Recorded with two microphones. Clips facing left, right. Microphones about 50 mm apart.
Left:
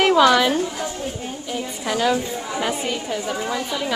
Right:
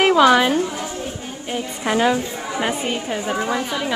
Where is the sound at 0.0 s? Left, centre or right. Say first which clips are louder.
Right 1 dB; centre.